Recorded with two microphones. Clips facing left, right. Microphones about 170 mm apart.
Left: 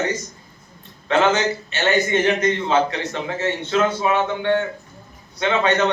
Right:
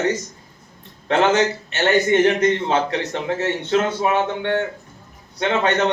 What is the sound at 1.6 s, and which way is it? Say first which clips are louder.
A man's voice: right 2 dB; 60° right (ahead or behind).